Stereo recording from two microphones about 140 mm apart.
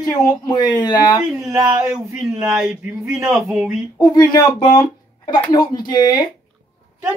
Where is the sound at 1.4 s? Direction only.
20° right (ahead or behind).